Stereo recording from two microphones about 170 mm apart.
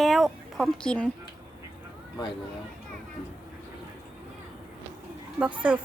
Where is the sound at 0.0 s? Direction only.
Centre (ahead or behind).